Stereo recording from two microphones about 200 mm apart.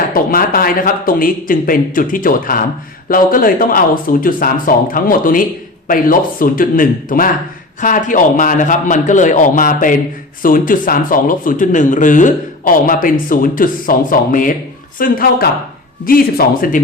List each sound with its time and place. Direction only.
0.1 s a man's voice: 45° left (ahead or behind)